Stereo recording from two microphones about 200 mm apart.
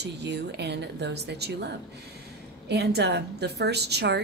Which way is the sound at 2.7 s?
55° right (ahead or behind).